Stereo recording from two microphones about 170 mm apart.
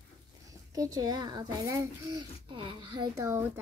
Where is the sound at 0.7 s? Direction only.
20° right (ahead or behind).